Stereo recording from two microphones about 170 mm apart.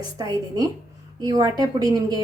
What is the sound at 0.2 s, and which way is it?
A woman's voice, 20° right (ahead or behind).